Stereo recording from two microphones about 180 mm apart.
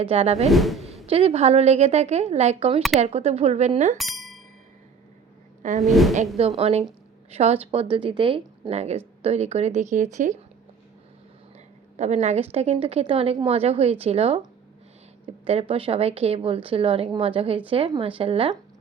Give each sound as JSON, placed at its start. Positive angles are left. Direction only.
{"t": 0.0, "sound": "a woman's voice", "side_deg": -35}
{"t": 0.4, "sound": "speech", "side_deg": 0}
{"t": 1.0, "sound": "a woman's voice", "side_deg": -35}
{"t": 3.9, "sound": "a sound", "side_deg": 0}
{"t": 5.8, "sound": "speech", "side_deg": 0}
{"t": 6.6, "sound": "a woman's voice", "side_deg": -35}
{"t": 11.9, "sound": "a woman's voice", "side_deg": -40}
{"t": 15.4, "sound": "a woman's voice", "side_deg": -35}